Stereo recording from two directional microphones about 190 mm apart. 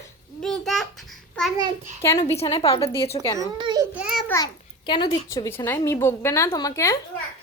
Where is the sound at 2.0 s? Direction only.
15° left (ahead or behind).